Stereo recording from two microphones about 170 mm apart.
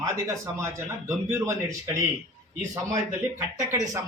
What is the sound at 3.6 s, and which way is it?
Speech, 15° right (ahead or behind).